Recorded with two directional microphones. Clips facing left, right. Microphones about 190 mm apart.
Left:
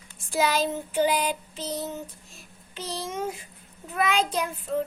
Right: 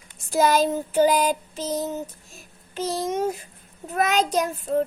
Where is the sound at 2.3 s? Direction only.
45° right (ahead or behind).